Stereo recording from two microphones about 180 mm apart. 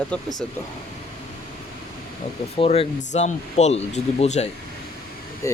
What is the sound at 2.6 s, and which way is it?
Speech, 35° left (ahead or behind).